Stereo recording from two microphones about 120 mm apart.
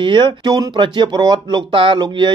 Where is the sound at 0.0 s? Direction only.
40° right (ahead or behind).